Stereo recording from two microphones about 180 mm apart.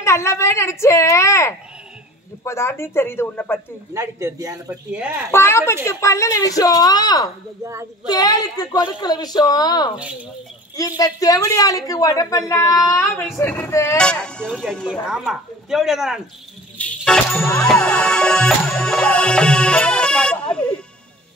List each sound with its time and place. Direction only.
0.0 s a woman's voice: 15° left (ahead or behind)
3.9 s speech: 15° right (ahead or behind)
4.9 s speech: 5° right (ahead or behind)
5.3 s a woman's voice: 15° left (ahead or behind); by 16.2 s centre (ahead or behind)
16.7 s music: 5° left (ahead or behind)